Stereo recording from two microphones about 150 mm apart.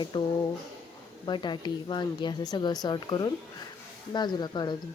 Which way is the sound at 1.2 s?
30° left (ahead or behind).